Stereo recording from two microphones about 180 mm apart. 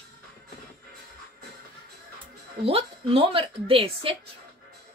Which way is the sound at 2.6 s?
30° right (ahead or behind).